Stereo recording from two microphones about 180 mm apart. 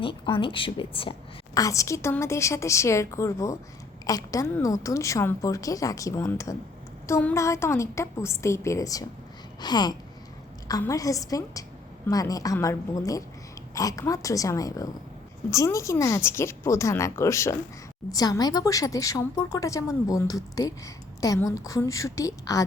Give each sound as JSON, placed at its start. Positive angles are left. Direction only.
{"t": 0.0, "sound": "a woman's voice", "side_deg": 30}
{"t": 1.5, "sound": "a woman's voice", "side_deg": 20}